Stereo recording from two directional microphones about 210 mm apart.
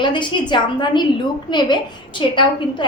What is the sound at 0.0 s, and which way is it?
A woman's voice, 20° left (ahead or behind).